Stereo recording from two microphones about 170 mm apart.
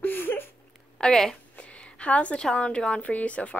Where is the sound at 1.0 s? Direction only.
5° left (ahead or behind).